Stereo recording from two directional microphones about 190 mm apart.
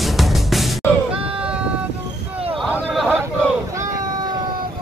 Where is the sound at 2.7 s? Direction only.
Centre (ahead or behind).